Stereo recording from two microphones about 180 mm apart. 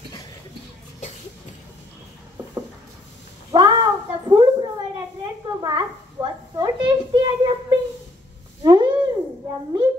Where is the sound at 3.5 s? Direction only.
25° right (ahead or behind).